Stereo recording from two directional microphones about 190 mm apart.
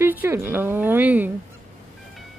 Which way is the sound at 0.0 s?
10° right (ahead or behind).